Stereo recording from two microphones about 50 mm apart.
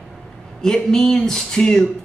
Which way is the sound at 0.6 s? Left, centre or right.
Centre.